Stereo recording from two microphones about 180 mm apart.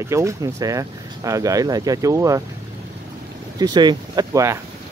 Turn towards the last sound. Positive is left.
turn(degrees=-20)  # may be behind; listen again after turning